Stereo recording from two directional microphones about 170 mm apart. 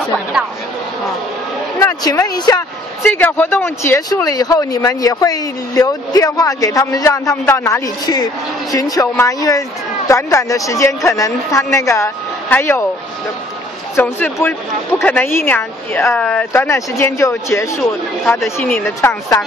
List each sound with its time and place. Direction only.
1.8 s speech: 15° left (ahead or behind)
3.0 s speech: 10° left (ahead or behind)
13.9 s speech: 10° left (ahead or behind)
18.4 s speech: 10° left (ahead or behind)